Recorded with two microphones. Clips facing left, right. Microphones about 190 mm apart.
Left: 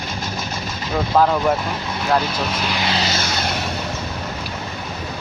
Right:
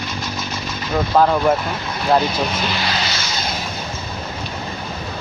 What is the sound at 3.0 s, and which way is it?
Vehicle, 45° left (ahead or behind).